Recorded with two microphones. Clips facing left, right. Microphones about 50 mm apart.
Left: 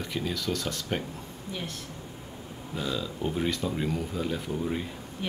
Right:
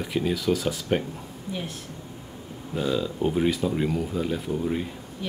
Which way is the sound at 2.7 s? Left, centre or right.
Centre.